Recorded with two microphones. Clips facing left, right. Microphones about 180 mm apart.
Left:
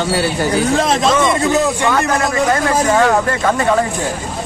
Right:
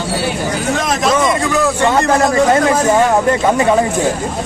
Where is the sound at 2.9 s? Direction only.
15° right (ahead or behind).